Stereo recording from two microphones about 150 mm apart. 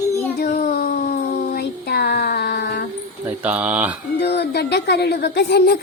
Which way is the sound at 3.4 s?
10° right (ahead or behind).